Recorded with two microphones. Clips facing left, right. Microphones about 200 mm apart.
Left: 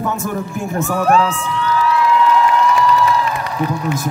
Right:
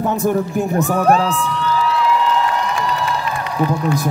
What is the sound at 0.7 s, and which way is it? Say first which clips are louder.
Speech: left 1 dB; 35° right (ahead or behind).